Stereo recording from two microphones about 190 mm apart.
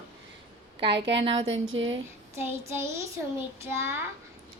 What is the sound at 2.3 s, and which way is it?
A child's voice, 15° right (ahead or behind).